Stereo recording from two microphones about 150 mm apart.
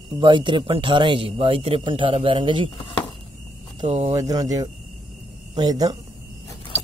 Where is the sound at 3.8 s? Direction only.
45° right (ahead or behind).